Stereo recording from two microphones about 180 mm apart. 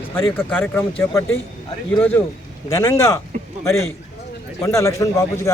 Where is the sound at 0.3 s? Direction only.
10° left (ahead or behind).